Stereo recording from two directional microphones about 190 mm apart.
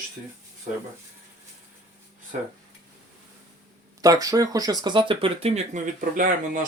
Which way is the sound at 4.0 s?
20° right (ahead or behind).